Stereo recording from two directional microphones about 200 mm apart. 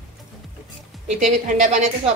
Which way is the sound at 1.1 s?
35° right (ahead or behind).